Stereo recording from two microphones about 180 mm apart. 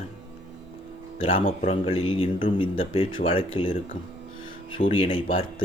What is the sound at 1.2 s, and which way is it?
Speech, 30° left (ahead or behind).